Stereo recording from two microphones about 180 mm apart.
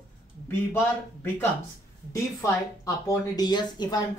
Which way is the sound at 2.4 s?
20° left (ahead or behind).